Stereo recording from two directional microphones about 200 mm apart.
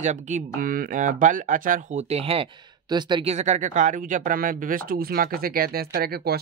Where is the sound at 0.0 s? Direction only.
35° right (ahead or behind).